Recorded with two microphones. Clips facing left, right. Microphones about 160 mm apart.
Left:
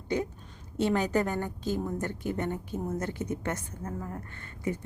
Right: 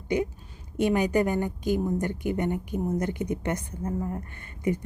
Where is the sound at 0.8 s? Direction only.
15° right (ahead or behind).